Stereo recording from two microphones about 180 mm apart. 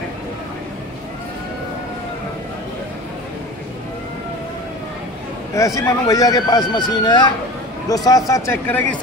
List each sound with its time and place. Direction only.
5.8 s speech: 20° left (ahead or behind)